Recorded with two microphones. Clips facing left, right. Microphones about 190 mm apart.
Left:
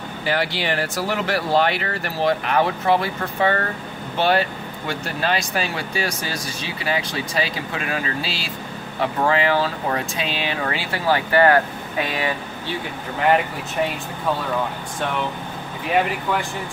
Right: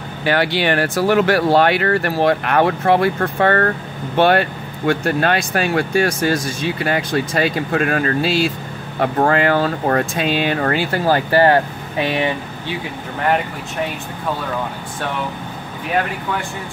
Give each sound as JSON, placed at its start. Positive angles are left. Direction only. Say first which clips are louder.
{"t": 0.2, "sound": "speech", "louder": "right 6 dB", "side_deg": -65}
{"t": 11.4, "sound": "speech", "louder": "right 2 dB", "side_deg": -25}